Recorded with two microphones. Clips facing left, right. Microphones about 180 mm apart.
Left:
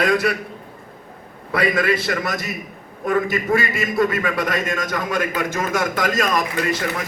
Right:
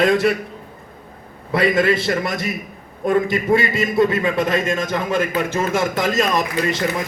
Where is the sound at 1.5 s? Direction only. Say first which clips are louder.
Right 3 dB; 25° right (ahead or behind).